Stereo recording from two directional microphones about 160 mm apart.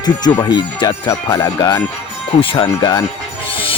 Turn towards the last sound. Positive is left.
turn(degrees=35)  # may be behind; listen again after turning